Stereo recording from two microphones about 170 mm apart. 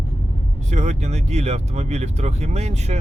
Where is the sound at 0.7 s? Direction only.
45° right (ahead or behind).